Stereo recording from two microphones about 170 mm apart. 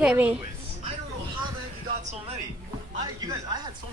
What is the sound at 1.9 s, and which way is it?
Speech, 40° right (ahead or behind).